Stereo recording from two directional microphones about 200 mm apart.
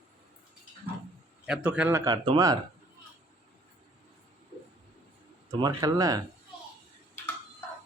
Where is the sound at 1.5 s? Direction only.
5° right (ahead or behind).